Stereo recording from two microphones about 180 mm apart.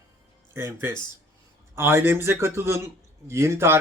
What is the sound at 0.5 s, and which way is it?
Speech, 15° right (ahead or behind).